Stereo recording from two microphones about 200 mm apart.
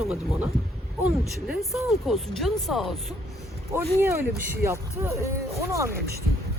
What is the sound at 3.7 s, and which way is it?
Speech, 10° right (ahead or behind).